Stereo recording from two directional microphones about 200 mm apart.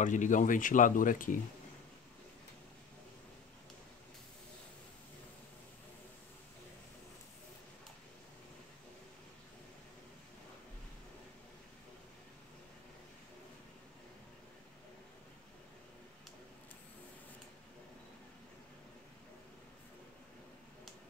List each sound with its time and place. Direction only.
0.0 s speech: 40° left (ahead or behind)